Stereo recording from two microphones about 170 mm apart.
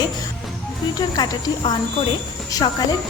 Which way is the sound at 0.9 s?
20° left (ahead or behind).